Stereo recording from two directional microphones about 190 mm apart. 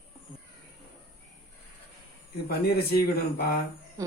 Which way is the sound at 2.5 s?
55° left (ahead or behind).